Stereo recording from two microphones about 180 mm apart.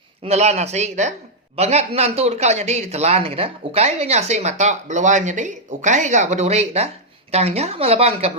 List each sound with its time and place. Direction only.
0.3 s speech: 35° right (ahead or behind)